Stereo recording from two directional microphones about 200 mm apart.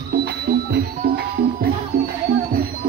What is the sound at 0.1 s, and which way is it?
Music, 55° right (ahead or behind).